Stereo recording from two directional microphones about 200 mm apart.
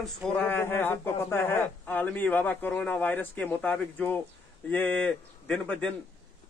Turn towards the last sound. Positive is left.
turn(degrees=5)  # may be behind; listen again after turning